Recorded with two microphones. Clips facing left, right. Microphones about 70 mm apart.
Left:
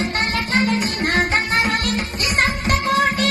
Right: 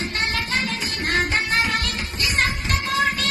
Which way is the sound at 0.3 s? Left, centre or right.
Left.